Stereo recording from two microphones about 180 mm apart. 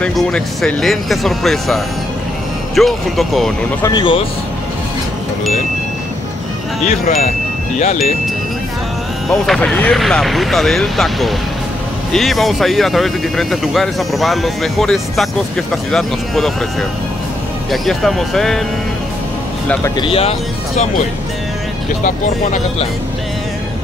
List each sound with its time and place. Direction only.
0.0 s speech: centre (ahead or behind)
3.8 s speech: 25° left (ahead or behind)
6.9 s speech: 40° left (ahead or behind)
9.3 s speech: centre (ahead or behind)
17.6 s speech: centre (ahead or behind)
20.0 s speech: 30° left (ahead or behind)
22.0 s speech: 45° left (ahead or behind)